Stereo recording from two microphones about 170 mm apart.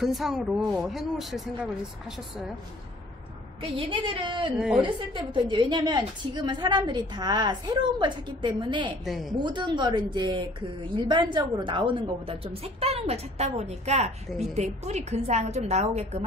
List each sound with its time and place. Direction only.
0.0 s speech: centre (ahead or behind)
3.6 s a woman's voice: 30° right (ahead or behind)
4.6 s speech: 5° right (ahead or behind)
4.8 s a woman's voice: 30° right (ahead or behind)
9.0 s speech: centre (ahead or behind)
9.4 s a woman's voice: 25° right (ahead or behind)